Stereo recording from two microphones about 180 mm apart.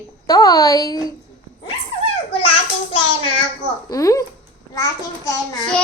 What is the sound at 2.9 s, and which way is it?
Child singing, 30° left (ahead or behind).